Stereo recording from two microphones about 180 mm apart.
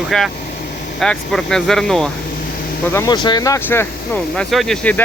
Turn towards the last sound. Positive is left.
turn(degrees=5)  # may be behind; listen again after turning